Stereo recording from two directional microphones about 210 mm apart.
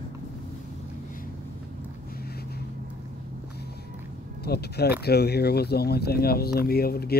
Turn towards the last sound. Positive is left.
turn(degrees=50)  # may be behind; listen again after turning